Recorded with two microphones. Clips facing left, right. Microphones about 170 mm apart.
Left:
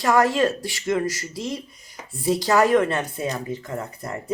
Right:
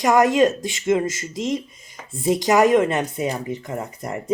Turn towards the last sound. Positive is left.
turn(degrees=-20)  # may be behind; listen again after turning